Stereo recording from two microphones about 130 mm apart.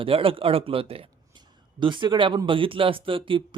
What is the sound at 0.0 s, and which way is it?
Speech, 45° right (ahead or behind).